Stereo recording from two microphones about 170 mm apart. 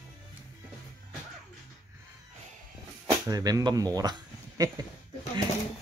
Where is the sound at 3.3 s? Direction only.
20° right (ahead or behind).